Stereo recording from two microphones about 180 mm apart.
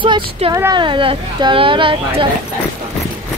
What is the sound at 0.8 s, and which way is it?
Speech, 30° right (ahead or behind).